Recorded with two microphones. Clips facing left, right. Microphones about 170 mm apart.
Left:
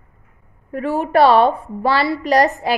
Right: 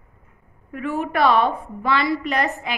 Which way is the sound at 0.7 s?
35° left (ahead or behind).